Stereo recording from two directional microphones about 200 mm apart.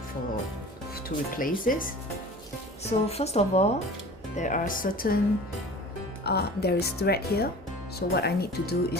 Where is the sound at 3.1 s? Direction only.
30° left (ahead or behind).